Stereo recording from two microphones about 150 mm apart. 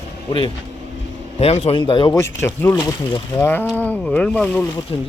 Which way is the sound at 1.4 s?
40° left (ahead or behind).